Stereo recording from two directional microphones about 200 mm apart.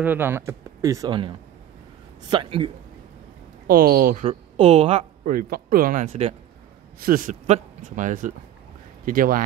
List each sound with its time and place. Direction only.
0.0 s speech: 10° right (ahead or behind)
3.6 s speech: 45° right (ahead or behind)
4.3 s speech: 30° right (ahead or behind)
5.3 s speech: 45° right (ahead or behind)
7.0 s speech: 45° right (ahead or behind)